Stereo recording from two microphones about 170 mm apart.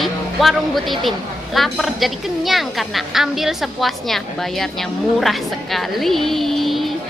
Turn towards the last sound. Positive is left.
turn(degrees=0)  # may be behind; listen again after turning